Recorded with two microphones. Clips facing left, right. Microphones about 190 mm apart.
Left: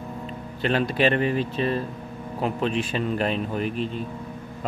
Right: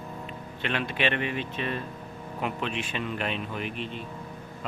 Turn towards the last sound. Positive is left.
turn(degrees=40)  # may be behind; listen again after turning